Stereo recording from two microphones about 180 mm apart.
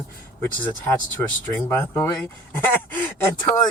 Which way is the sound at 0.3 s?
10° left (ahead or behind).